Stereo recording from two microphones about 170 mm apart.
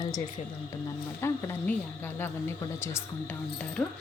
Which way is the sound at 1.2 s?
10° left (ahead or behind).